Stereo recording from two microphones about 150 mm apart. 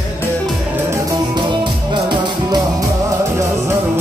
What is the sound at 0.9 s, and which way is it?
Music, 25° right (ahead or behind).